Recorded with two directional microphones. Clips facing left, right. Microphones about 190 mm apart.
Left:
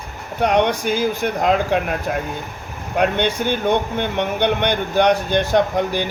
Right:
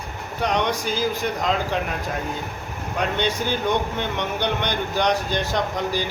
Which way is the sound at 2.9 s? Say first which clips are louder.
Left 5 dB; 60° left (ahead or behind).